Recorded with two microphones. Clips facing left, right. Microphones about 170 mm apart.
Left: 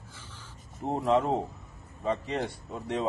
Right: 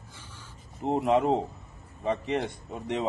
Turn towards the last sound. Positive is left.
turn(degrees=-20)  # may be behind; listen again after turning